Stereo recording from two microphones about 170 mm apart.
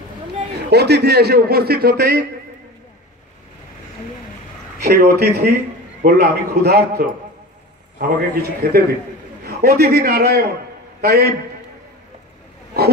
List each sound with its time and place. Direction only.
0.7 s a man's voice: 75° right (ahead or behind)
4.8 s a man's voice: 65° right (ahead or behind)